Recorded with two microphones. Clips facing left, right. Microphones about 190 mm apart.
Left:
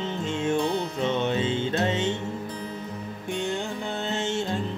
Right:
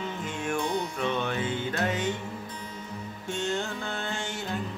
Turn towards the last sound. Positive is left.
turn(degrees=25)  # may be behind; listen again after turning